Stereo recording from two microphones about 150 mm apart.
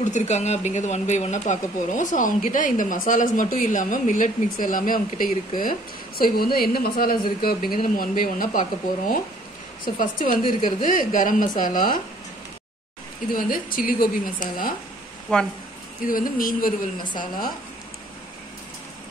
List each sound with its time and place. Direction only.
0.0 s speech: 50° left (ahead or behind); by 12.0 s 65° left (ahead or behind)
13.3 s a woman's voice: 70° left (ahead or behind)
15.3 s speech: 5° left (ahead or behind)
16.1 s a woman's voice: 65° left (ahead or behind)